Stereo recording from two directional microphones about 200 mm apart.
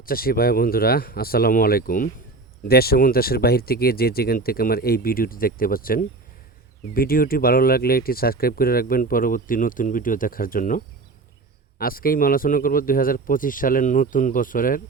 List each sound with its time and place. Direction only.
0.0 s speech: 45° left (ahead or behind)